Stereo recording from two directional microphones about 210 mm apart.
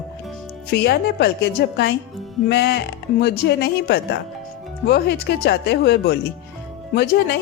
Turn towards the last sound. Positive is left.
turn(degrees=50)  # may be behind; listen again after turning